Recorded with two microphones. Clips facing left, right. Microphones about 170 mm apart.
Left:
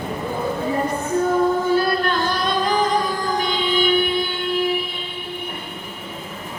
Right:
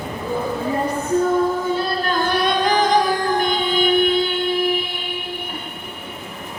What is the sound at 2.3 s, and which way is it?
Music, 65° right (ahead or behind).